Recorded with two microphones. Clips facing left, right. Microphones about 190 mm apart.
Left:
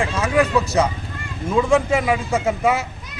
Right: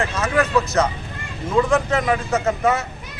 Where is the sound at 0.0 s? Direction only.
10° left (ahead or behind).